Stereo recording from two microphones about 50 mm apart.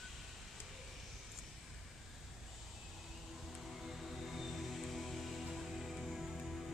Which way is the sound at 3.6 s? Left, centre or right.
Centre.